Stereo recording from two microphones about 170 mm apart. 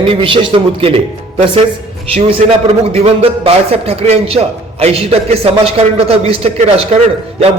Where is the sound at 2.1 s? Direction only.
35° right (ahead or behind).